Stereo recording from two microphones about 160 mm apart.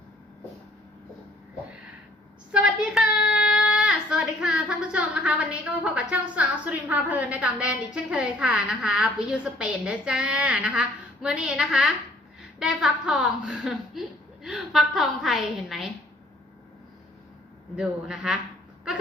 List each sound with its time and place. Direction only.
2.5 s a woman's voice: 5° right (ahead or behind)
17.7 s a man's voice: 5° right (ahead or behind)